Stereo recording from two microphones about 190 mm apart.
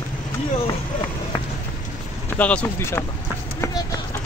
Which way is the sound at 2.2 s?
10° left (ahead or behind).